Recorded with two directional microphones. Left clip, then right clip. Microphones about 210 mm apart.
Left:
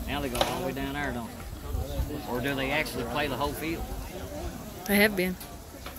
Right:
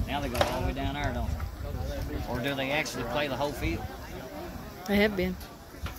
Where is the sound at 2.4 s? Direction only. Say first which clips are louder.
Even; 45° right (ahead or behind).